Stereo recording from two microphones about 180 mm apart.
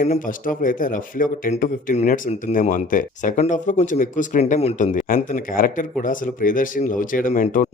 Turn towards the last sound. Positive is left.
turn(degrees=45)  # may be behind; listen again after turning